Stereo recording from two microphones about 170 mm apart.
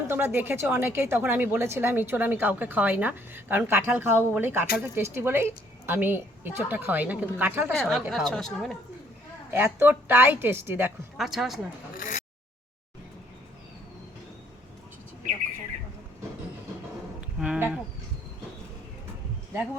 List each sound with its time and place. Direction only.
0.1 s a woman's voice: 10° right (ahead or behind)
7.7 s a woman's voice: centre (ahead or behind)
9.5 s a woman's voice: 15° right (ahead or behind)
11.2 s a woman's voice: centre (ahead or behind)
11.9 s a sound: 50° left (ahead or behind)
17.2 s a sound: 5° right (ahead or behind)